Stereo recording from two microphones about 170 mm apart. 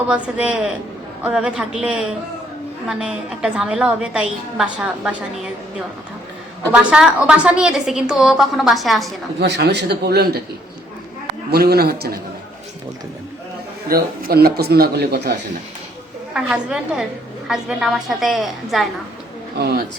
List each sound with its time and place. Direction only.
0.1 s a man's voice: 5° right (ahead or behind)
6.7 s a woman's voice: 5° right (ahead or behind)
9.4 s a man's voice: 75° right (ahead or behind)
11.5 s a man's voice: 65° right (ahead or behind)
13.8 s a man's voice: 60° right (ahead or behind)
16.3 s a woman's voice: 5° right (ahead or behind)
19.5 s a man's voice: 65° right (ahead or behind)